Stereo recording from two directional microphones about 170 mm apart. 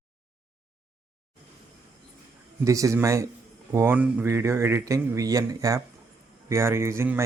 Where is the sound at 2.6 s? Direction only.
20° right (ahead or behind).